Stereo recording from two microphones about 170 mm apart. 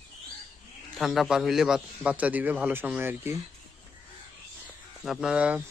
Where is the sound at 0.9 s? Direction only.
Centre (ahead or behind).